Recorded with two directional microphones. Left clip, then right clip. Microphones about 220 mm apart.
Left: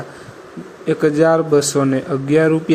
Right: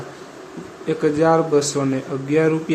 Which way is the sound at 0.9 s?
15° left (ahead or behind).